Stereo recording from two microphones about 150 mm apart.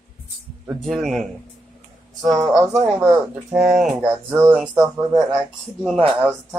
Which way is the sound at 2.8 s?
15° right (ahead or behind).